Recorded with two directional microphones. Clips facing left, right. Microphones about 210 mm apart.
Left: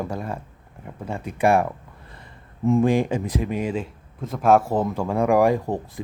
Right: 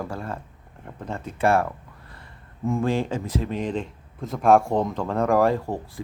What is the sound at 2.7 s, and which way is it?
Speech, 15° left (ahead or behind).